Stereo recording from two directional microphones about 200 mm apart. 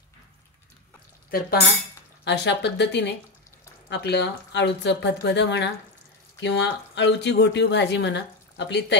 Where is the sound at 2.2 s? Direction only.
60° left (ahead or behind).